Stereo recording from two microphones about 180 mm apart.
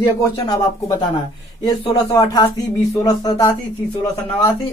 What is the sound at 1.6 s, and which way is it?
Speech, 20° left (ahead or behind).